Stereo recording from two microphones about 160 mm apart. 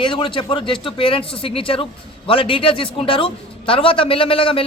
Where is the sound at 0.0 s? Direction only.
30° left (ahead or behind).